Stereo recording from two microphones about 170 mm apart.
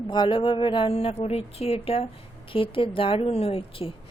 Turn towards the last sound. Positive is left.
turn(degrees=35)  # may be behind; listen again after turning